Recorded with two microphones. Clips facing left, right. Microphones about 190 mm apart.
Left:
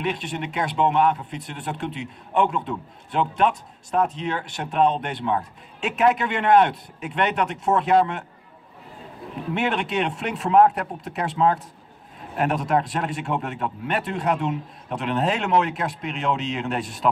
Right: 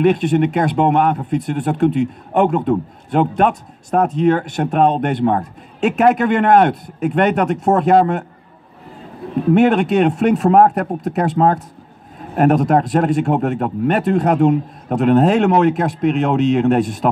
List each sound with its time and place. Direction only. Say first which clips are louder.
0.0 s speech: right 14 dB; 50° right (ahead or behind)
9.5 s speech: right 12 dB; 45° right (ahead or behind)